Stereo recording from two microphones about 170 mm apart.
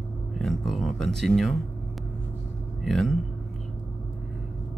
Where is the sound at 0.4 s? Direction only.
Centre (ahead or behind).